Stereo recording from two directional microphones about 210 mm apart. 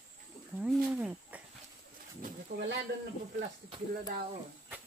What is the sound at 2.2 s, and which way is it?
Bird, 50° right (ahead or behind).